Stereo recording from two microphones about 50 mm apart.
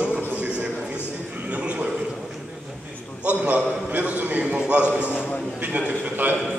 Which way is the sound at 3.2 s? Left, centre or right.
Right.